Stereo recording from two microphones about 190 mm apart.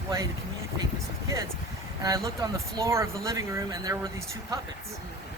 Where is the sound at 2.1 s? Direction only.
20° right (ahead or behind).